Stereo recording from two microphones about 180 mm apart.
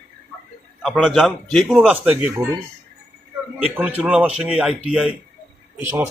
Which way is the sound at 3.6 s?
10° right (ahead or behind).